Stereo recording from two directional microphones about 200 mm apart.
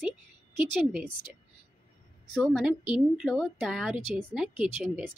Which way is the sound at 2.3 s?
5° right (ahead or behind).